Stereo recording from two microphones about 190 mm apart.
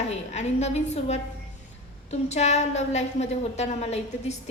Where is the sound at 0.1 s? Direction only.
35° left (ahead or behind).